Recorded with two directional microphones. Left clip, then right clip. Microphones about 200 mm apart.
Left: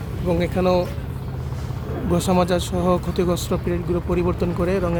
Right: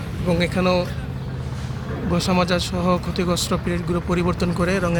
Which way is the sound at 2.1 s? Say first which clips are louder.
Left 1 dB; 25° left (ahead or behind).